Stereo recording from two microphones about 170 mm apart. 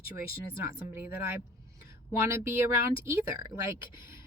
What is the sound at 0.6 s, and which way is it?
Speech, 15° right (ahead or behind).